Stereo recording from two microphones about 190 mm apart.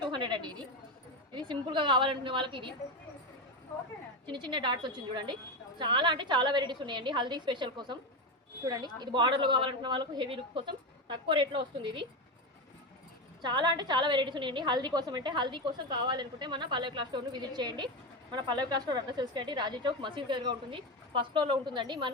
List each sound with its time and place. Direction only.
0.0 s a sound: 25° right (ahead or behind)
4.3 s a woman's voice: 25° right (ahead or behind)
13.4 s a woman's voice: 25° right (ahead or behind)